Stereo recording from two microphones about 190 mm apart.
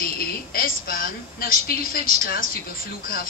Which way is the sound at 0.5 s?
50° left (ahead or behind).